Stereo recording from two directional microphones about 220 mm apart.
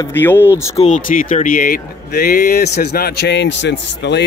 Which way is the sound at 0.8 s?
35° left (ahead or behind).